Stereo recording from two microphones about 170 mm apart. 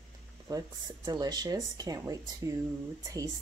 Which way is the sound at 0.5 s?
20° right (ahead or behind).